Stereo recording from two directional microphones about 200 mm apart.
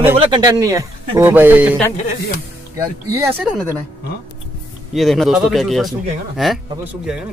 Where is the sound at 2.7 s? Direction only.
15° right (ahead or behind).